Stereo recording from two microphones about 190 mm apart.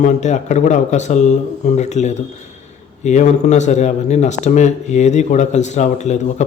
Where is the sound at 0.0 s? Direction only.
40° left (ahead or behind).